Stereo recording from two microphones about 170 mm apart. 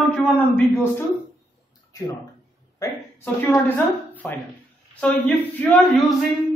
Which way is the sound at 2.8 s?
20° left (ahead or behind).